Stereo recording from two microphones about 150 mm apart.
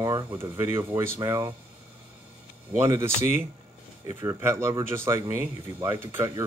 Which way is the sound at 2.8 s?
20° right (ahead or behind).